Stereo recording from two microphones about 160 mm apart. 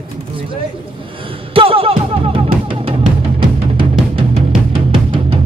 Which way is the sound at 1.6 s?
35° right (ahead or behind).